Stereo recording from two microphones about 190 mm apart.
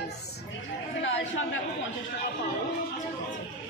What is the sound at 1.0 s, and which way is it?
Speech, 80° left.